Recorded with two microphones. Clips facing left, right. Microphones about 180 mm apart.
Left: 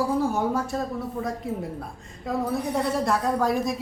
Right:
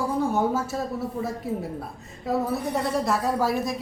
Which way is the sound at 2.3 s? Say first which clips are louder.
Right 1 dB; 5° right (ahead or behind).